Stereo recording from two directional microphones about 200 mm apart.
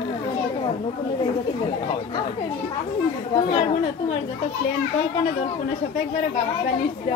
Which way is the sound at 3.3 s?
25° left (ahead or behind).